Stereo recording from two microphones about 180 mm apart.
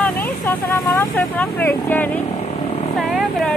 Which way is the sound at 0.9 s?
10° left (ahead or behind).